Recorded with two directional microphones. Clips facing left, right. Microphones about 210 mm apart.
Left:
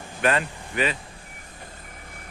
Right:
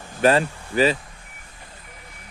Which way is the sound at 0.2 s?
35° right (ahead or behind).